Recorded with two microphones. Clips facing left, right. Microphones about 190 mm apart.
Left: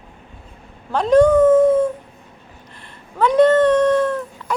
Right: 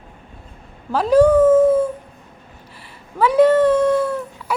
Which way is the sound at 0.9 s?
5° right (ahead or behind).